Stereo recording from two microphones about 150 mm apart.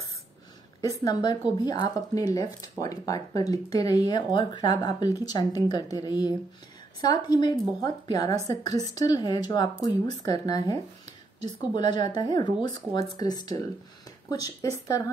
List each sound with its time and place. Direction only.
0.7 s speech: 25° left (ahead or behind)